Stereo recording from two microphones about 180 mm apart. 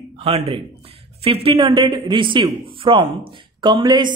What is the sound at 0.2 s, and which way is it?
Speech, 35° right (ahead or behind).